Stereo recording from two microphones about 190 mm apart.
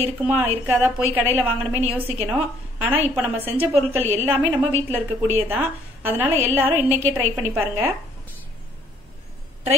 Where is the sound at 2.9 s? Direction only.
10° right (ahead or behind).